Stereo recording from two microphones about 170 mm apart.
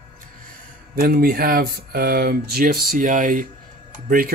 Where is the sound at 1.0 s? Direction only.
65° right (ahead or behind).